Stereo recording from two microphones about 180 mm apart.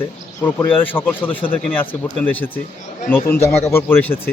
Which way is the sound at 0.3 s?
10° left (ahead or behind).